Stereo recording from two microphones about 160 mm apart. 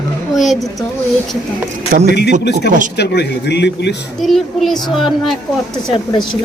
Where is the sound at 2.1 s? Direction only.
90° left.